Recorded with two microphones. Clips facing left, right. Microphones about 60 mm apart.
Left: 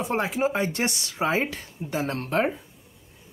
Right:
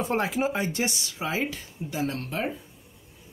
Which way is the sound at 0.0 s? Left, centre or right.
Left.